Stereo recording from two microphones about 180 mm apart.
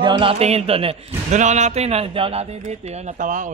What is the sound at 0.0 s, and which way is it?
Speech, 25° right (ahead or behind).